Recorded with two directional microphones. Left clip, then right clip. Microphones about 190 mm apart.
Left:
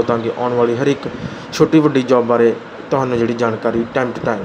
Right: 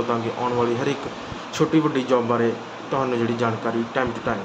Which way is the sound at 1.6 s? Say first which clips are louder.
Left 8 dB; 30° left (ahead or behind).